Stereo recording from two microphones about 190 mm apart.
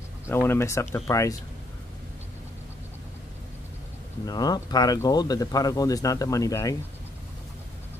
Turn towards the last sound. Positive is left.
turn(degrees=15)  # may be behind; listen again after turning